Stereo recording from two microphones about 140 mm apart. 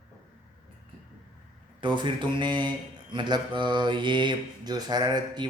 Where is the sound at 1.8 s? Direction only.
35° right (ahead or behind).